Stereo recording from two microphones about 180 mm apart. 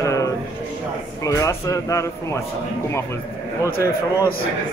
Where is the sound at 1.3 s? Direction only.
20° left (ahead or behind).